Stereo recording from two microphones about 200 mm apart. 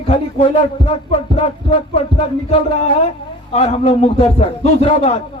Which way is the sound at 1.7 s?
35° left (ahead or behind).